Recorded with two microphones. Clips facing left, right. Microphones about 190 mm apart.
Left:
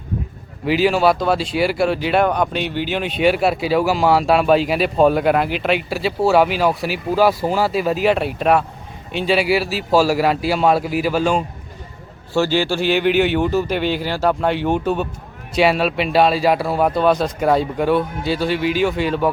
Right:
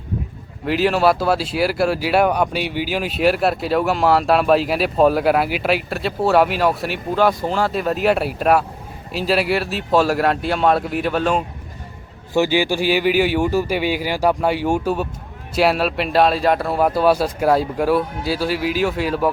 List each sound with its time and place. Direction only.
0.6 s speech: centre (ahead or behind)
12.3 s speech: 15° right (ahead or behind)